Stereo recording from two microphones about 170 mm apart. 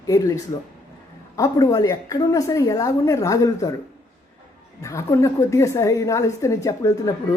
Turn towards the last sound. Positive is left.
turn(degrees=20)  # may be behind; listen again after turning